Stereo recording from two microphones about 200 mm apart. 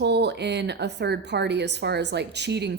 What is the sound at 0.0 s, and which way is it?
A woman's voice, 55° right (ahead or behind).